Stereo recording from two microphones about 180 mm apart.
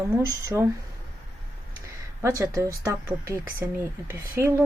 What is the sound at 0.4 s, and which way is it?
Speech, 15° right (ahead or behind).